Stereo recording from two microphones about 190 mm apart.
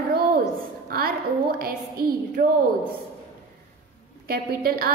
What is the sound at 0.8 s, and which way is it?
Music, 50° right (ahead or behind).